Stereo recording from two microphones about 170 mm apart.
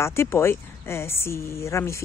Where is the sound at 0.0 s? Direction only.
15° left (ahead or behind).